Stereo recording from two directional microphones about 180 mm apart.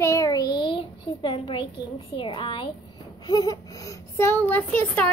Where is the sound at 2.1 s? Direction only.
25° left (ahead or behind); by 5.0 s 10° left (ahead or behind).